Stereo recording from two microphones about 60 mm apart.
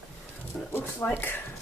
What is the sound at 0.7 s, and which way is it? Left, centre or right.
Speech, left.